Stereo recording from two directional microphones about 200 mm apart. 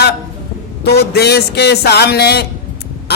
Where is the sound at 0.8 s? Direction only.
55° left (ahead or behind).